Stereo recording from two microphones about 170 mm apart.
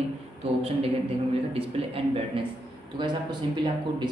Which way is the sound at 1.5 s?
30° right (ahead or behind).